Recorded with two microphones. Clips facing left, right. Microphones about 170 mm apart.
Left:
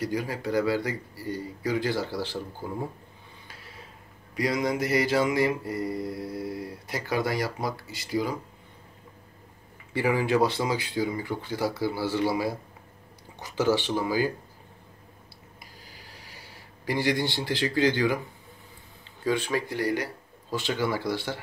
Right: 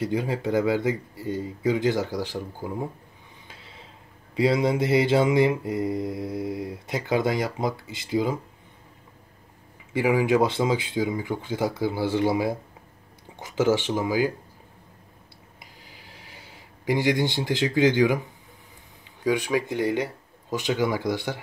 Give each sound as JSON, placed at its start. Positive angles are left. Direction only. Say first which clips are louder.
{"t": 0.0, "sound": "mantra", "louder": "right 4 dB", "side_deg": -25}
{"t": 3.4, "sound": "a sound", "louder": "even", "side_deg": -25}
{"t": 4.4, "sound": "mantra", "louder": "right 5 dB", "side_deg": -25}
{"t": 9.9, "sound": "mantra", "louder": "right 3 dB", "side_deg": -15}
{"t": 13.7, "sound": "speech", "louder": "right 1 dB", "side_deg": -15}
{"t": 16.8, "sound": "speech", "louder": "right 3 dB", "side_deg": -15}
{"t": 19.2, "sound": "speech", "louder": "right 3 dB", "side_deg": -15}